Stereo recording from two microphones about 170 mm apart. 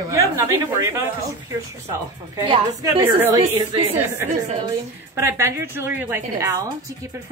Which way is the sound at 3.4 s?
30° right (ahead or behind).